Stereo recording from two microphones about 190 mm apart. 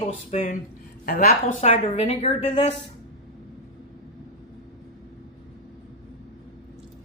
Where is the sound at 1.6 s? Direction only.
30° left (ahead or behind).